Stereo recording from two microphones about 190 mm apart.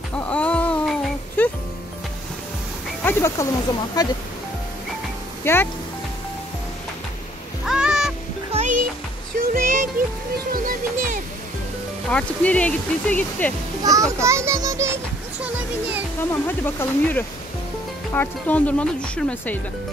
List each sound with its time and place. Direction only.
0.1 s a sound: 5° left (ahead or behind)
3.0 s speech: 10° left (ahead or behind)
5.4 s speech: 10° left (ahead or behind)
7.6 s a sound: 5° right (ahead or behind)
8.5 s music: 40° right (ahead or behind)
12.1 s speech: 5° left (ahead or behind)
13.8 s a child's voice: 15° right (ahead or behind)
16.3 s speech: 10° left (ahead or behind)